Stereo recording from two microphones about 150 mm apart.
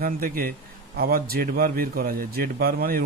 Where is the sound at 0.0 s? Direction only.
80° right.